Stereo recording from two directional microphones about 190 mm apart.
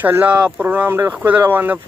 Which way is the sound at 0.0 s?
10° right (ahead or behind).